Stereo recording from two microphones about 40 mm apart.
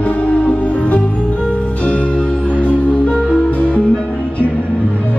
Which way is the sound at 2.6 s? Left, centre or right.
Left.